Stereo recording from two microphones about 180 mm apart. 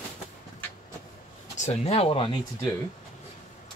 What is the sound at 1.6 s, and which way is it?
Speech, 35° left (ahead or behind).